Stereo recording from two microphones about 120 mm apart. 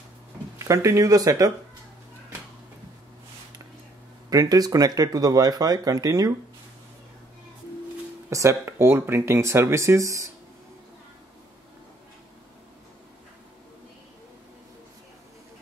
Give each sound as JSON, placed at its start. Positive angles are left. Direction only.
{"t": 0.6, "sound": "speech", "side_deg": -25}
{"t": 4.3, "sound": "speech", "side_deg": -30}
{"t": 8.3, "sound": "speech", "side_deg": -25}